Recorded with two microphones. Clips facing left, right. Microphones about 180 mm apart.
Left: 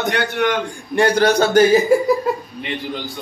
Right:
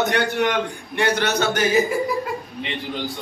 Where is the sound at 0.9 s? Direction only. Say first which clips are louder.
Left 6 dB; 35° left (ahead or behind).